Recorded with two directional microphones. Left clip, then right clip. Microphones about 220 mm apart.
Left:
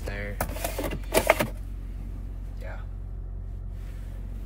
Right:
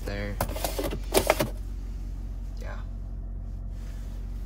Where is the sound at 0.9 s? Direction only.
15° right (ahead or behind).